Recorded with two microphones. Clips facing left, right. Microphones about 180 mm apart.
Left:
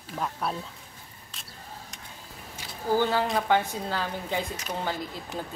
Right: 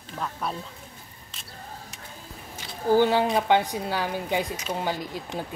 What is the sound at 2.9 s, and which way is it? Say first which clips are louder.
A woman's voice: right 4 dB; 15° right (ahead or behind).